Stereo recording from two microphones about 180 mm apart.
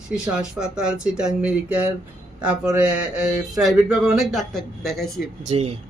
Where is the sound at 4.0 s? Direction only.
Centre (ahead or behind).